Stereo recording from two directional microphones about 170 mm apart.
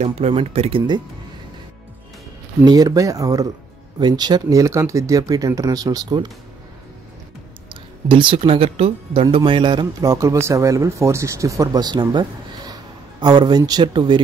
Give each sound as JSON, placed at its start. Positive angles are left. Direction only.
{"t": 0.0, "sound": "speech", "side_deg": -40}
{"t": 2.6, "sound": "speech", "side_deg": -20}
{"t": 7.7, "sound": "speech", "side_deg": -30}